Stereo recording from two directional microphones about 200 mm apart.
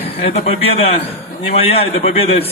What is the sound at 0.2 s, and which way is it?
A man's voice, 30° left (ahead or behind).